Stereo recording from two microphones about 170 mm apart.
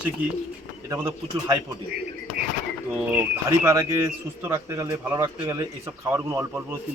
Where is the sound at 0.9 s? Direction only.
20° right (ahead or behind).